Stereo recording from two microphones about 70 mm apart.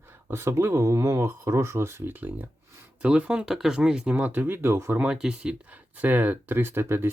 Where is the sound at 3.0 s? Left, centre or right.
Centre.